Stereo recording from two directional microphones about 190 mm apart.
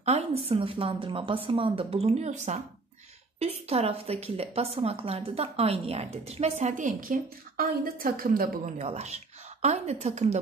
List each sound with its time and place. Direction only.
0.0 s a woman's voice: 35° right (ahead or behind)